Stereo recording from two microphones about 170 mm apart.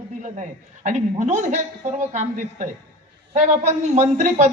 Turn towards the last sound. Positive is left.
turn(degrees=-45)  # may be behind; listen again after turning